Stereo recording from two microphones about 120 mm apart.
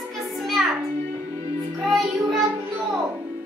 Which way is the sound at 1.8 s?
Centre (ahead or behind).